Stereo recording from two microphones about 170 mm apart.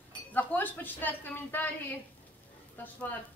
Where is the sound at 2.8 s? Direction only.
10° left (ahead or behind).